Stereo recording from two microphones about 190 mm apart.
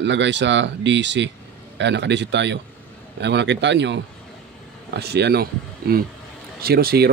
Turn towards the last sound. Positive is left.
turn(degrees=-55)  # may be behind; listen again after turning